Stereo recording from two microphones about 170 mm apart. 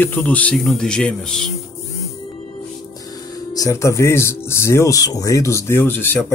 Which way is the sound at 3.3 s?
20° left (ahead or behind).